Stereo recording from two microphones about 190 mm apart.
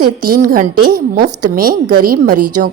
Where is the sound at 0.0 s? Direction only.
50° right (ahead or behind).